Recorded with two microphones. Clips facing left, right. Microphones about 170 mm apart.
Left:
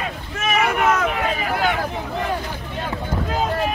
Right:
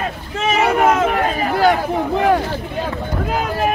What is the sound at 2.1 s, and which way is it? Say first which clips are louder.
Vehicle: right 10 dB; 65° right (ahead or behind).